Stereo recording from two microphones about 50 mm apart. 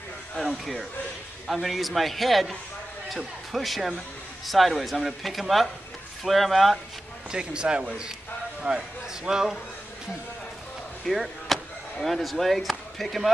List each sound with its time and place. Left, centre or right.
0.4 s speech: centre
7.2 s a man's voice: centre
11.1 s speech: centre